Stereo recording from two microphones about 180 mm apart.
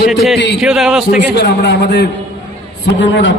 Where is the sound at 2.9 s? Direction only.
85° left.